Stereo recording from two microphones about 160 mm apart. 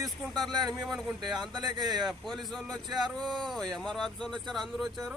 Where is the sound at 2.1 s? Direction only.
Centre (ahead or behind).